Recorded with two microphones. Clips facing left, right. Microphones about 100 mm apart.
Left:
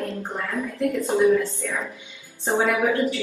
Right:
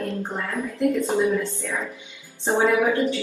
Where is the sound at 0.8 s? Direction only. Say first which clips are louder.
Left 1 dB; 20° right (ahead or behind).